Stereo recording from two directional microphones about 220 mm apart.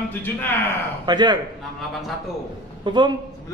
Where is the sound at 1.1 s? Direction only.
20° right (ahead or behind).